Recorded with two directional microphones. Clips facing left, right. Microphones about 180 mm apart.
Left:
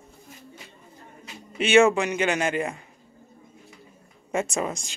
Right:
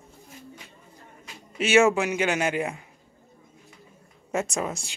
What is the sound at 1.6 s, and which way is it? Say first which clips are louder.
A man's voice: left 2 dB; 5° right (ahead or behind).